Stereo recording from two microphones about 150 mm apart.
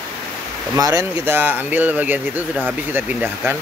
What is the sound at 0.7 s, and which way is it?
Speech, 20° right (ahead or behind).